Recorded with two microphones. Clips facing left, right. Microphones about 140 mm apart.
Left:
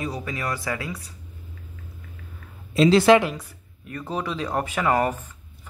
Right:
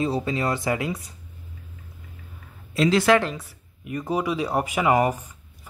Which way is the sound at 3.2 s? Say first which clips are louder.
Left 1 dB; centre (ahead or behind).